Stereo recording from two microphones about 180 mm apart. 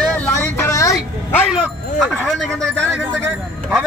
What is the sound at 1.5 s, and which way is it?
Speech, centre (ahead or behind).